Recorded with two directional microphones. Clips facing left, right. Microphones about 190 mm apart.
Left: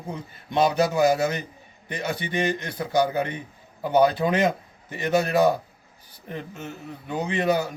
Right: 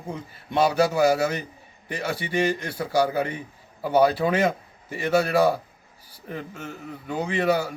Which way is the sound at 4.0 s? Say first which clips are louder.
Even; 30° right (ahead or behind).